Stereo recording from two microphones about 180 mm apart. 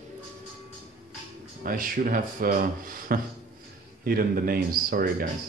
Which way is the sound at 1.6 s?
50° right (ahead or behind).